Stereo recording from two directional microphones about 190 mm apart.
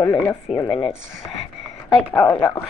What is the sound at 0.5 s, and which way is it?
Speech, 25° left (ahead or behind).